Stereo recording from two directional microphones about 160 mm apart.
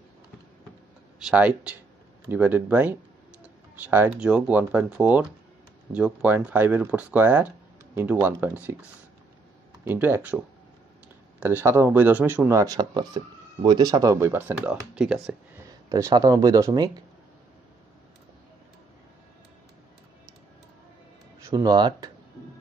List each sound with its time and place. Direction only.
1.2 s speech: 5° right (ahead or behind)
9.8 s speech: 10° right (ahead or behind)
15.9 s speech: 20° right (ahead or behind)
21.5 s speech: 25° right (ahead or behind)